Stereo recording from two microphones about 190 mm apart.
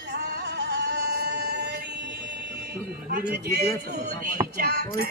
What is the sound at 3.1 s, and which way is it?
A man's voice, 55° right (ahead or behind).